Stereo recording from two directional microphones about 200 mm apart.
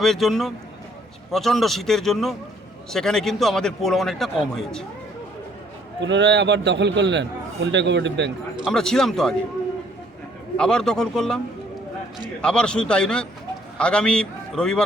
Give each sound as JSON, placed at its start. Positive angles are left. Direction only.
{"t": 0.0, "sound": "a man's voice", "side_deg": 0}
{"t": 6.0, "sound": "a man's voice", "side_deg": -60}
{"t": 8.6, "sound": "a man's voice", "side_deg": 5}
{"t": 10.6, "sound": "a man's voice", "side_deg": 5}
{"t": 12.4, "sound": "a man's voice", "side_deg": 5}